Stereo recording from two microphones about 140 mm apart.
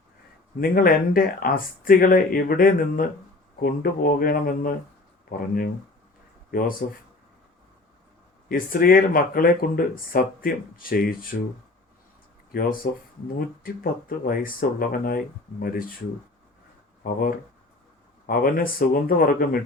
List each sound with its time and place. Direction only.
0.6 s speech: 90° left
6.8 s speech: 90° left
8.4 s speech: 90° left
12.5 s speech: 90° left
17.0 s speech: 90° left